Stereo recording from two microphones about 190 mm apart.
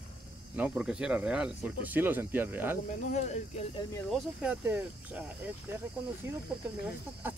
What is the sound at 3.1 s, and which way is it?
Speech, 40° left (ahead or behind).